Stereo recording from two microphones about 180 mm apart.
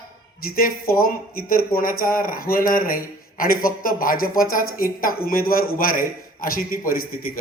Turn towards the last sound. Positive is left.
turn(degrees=55)  # may be behind; listen again after turning